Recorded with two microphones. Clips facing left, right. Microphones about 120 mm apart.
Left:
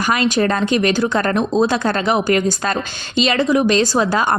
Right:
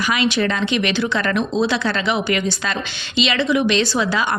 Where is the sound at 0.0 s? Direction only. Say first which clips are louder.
Left 2 dB; 45° left (ahead or behind).